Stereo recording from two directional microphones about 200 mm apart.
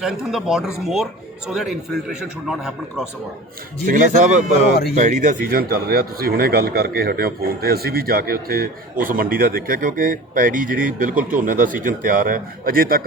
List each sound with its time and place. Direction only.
0.0 s speech: centre (ahead or behind)
3.8 s speech: 40° right (ahead or behind)